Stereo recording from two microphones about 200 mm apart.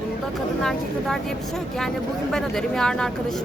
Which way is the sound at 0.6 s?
Centre (ahead or behind).